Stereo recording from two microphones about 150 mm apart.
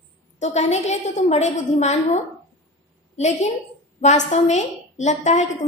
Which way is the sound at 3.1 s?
50° left (ahead or behind).